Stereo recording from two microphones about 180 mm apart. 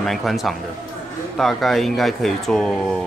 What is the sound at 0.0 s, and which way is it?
Speech, centre (ahead or behind).